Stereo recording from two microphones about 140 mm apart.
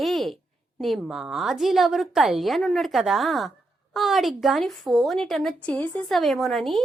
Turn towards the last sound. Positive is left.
turn(degrees=0)  # may be behind; listen again after turning